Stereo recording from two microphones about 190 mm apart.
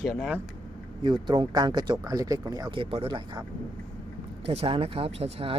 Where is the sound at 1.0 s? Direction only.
25° right (ahead or behind).